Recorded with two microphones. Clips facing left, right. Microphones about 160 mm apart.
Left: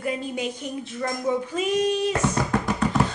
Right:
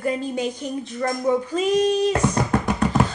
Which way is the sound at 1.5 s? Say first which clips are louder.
Right 4 dB; 5° left (ahead or behind).